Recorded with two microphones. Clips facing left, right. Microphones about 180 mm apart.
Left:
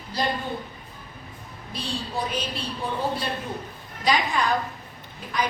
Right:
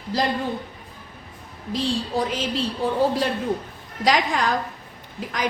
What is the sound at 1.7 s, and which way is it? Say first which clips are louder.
Speech: right 8 dB; 90° right.